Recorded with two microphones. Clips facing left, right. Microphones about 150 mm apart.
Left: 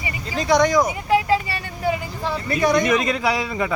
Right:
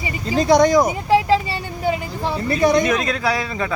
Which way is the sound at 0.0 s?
30° right (ahead or behind).